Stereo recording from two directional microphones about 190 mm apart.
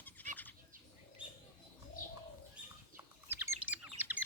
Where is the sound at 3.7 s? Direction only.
10° right (ahead or behind).